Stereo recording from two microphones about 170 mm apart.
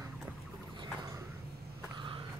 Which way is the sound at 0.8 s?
20° right (ahead or behind).